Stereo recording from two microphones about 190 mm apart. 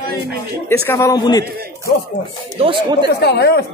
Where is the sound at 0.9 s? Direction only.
15° left (ahead or behind).